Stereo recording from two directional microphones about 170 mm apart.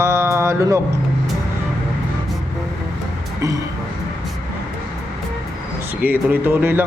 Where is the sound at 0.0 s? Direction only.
15° right (ahead or behind).